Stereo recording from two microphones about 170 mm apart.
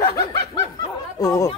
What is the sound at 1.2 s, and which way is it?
Speech, 20° left (ahead or behind).